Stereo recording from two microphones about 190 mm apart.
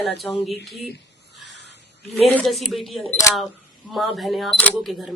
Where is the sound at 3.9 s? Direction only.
Centre (ahead or behind).